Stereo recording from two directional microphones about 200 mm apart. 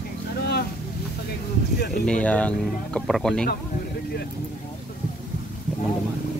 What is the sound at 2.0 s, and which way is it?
Speech, 5° left (ahead or behind).